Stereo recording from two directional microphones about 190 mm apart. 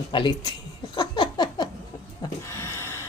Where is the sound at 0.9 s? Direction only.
25° left (ahead or behind).